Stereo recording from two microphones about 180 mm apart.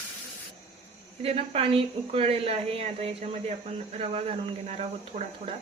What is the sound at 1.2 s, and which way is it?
A woman's voice, 30° right (ahead or behind).